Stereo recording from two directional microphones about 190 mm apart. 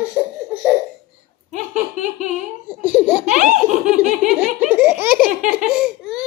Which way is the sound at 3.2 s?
40° right (ahead or behind).